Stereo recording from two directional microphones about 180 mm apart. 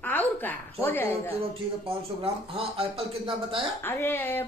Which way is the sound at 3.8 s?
15° left (ahead or behind).